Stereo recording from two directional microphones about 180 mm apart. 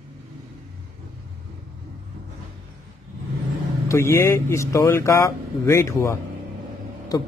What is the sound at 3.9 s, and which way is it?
Speech, 15° left (ahead or behind).